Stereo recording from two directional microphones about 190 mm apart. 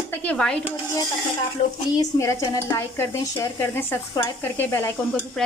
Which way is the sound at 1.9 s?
15° left (ahead or behind).